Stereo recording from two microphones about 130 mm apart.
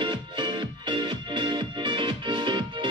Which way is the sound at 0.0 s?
40° right (ahead or behind).